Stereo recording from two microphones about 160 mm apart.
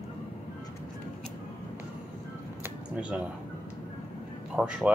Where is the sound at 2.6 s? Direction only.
10° right (ahead or behind).